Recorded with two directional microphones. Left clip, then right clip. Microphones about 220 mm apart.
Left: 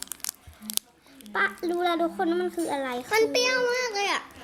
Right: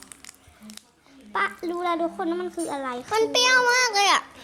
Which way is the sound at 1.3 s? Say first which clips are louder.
Even; 10° right (ahead or behind).